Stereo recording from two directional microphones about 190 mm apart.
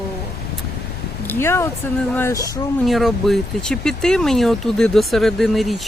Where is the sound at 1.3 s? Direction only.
10° left (ahead or behind).